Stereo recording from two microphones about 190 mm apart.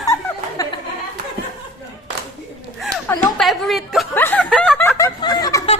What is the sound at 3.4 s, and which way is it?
Speech, centre (ahead or behind).